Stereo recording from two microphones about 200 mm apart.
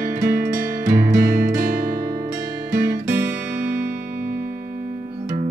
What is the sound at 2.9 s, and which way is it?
Music, 10° right (ahead or behind).